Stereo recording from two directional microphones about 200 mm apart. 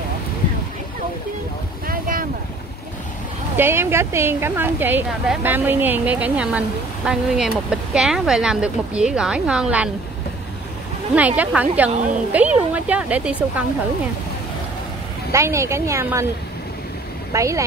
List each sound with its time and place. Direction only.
1.9 s boat: 45° right (ahead or behind)
3.5 s a woman's voice: 10° right (ahead or behind)
11.1 s a woman's voice: 5° right (ahead or behind)
15.3 s a woman's voice: 15° right (ahead or behind)
17.3 s a woman's voice: 15° right (ahead or behind)